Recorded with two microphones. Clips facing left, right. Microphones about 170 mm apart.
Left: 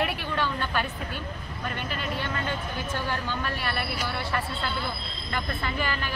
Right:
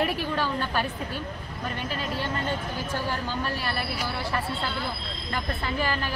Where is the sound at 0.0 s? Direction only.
35° right (ahead or behind).